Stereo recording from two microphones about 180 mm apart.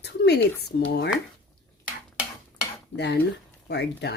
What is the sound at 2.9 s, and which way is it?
Speech, 70° left (ahead or behind).